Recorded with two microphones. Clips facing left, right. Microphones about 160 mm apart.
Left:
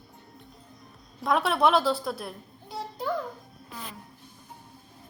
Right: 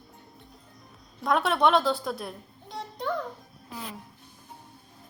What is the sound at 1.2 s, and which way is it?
A child's voice, centre (ahead or behind).